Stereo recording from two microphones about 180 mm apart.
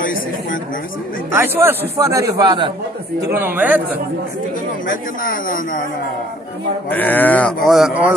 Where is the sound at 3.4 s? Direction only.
10° right (ahead or behind).